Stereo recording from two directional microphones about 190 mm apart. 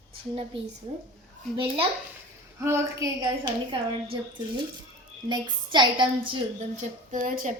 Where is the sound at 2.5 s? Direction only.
15° right (ahead or behind).